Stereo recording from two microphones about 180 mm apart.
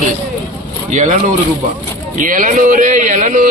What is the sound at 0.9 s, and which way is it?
Speech, 40° right (ahead or behind).